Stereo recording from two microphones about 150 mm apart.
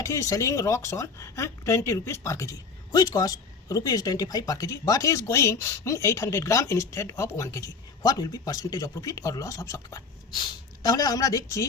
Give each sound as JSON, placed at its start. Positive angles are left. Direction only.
{"t": 0.0, "sound": "speech", "side_deg": 20}